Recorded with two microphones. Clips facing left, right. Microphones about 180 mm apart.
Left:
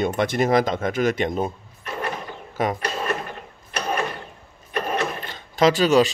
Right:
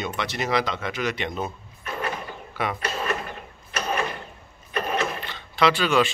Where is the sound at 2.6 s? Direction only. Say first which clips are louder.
Left 5 dB; 45° left (ahead or behind).